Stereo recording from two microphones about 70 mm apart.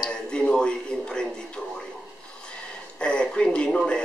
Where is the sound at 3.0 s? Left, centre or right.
Centre.